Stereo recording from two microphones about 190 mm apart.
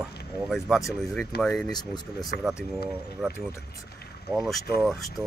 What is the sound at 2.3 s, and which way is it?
Speech, 55° left (ahead or behind).